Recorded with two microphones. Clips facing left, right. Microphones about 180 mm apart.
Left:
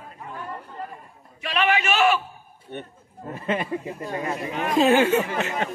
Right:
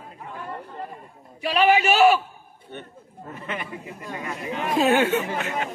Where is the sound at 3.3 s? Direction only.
30° left (ahead or behind).